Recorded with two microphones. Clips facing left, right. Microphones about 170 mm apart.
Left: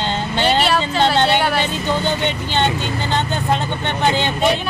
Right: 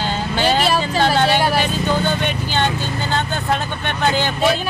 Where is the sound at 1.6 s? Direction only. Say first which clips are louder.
Right 1 dB; 20° left (ahead or behind).